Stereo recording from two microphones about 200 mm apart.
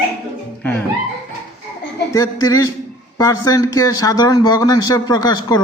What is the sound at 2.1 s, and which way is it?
A man's voice, 15° left (ahead or behind).